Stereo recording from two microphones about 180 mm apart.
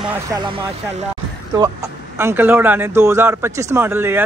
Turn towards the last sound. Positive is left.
turn(degrees=-10)  # may be behind; listen again after turning